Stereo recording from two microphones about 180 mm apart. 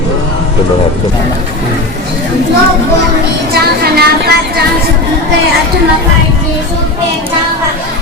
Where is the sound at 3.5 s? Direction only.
60° right (ahead or behind).